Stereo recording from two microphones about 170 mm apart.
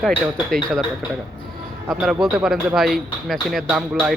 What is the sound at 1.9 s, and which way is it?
Speech, 5° right (ahead or behind).